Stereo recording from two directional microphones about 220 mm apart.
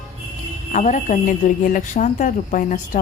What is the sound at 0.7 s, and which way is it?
A woman's voice, 35° left (ahead or behind).